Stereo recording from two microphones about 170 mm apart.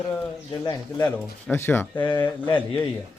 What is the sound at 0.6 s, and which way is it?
A man's voice, 20° left (ahead or behind).